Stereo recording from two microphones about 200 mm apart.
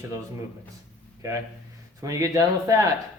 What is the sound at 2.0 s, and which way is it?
Speech, 15° right (ahead or behind).